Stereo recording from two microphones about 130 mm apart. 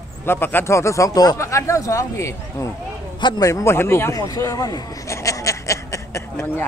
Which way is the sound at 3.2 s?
35° left (ahead or behind).